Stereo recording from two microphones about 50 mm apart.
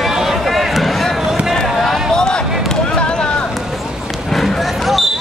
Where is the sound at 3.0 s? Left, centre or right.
Centre.